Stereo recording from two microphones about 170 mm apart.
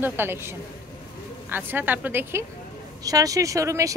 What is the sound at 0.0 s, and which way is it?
A woman's voice, 15° right (ahead or behind).